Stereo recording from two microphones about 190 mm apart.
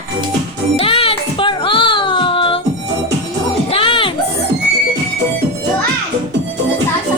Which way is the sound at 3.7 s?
30° left (ahead or behind).